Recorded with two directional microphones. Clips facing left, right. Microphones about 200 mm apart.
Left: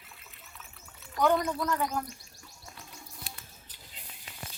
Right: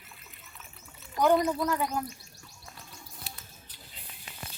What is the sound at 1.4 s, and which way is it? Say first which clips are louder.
Speech: right 2 dB; 5° right (ahead or behind).